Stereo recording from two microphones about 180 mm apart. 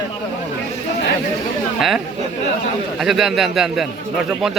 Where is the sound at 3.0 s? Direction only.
Centre (ahead or behind).